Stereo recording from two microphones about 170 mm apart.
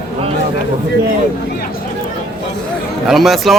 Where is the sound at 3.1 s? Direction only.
Centre (ahead or behind).